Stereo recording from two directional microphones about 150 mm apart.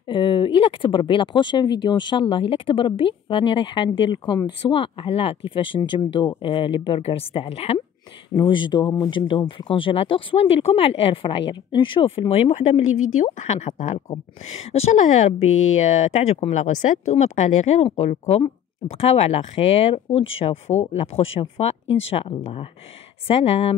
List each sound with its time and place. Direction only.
0.1 s speech: 35° left (ahead or behind)